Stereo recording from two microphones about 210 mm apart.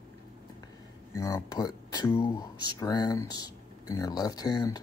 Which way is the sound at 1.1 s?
15° left (ahead or behind).